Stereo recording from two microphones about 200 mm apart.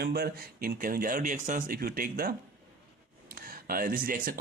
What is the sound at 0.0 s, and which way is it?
Speech, 50° right (ahead or behind).